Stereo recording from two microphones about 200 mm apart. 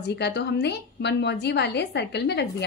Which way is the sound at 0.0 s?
55° left (ahead or behind).